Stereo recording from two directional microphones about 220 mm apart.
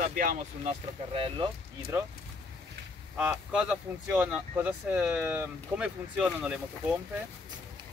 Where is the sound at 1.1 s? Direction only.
25° right (ahead or behind).